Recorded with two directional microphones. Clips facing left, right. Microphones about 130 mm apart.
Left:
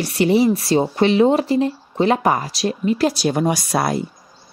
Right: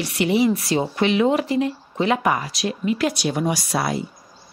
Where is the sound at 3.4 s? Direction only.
50° left (ahead or behind).